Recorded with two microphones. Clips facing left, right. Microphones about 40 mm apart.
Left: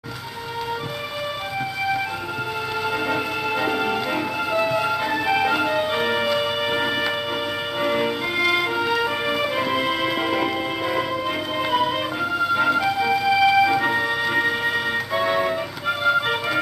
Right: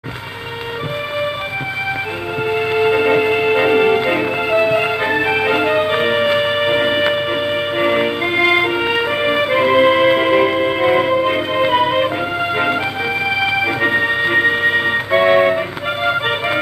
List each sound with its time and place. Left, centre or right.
2.7 s music: right